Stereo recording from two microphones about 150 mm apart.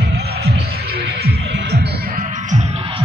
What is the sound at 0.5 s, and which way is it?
Music, 90° right.